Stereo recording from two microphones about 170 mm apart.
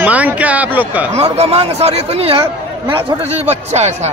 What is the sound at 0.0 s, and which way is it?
Speech, 10° right (ahead or behind).